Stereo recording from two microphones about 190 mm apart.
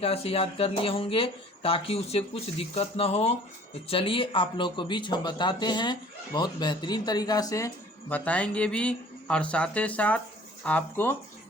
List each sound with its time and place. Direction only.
0.0 s a man's voice: 30° left (ahead or behind)
8.1 s speech: 5° left (ahead or behind)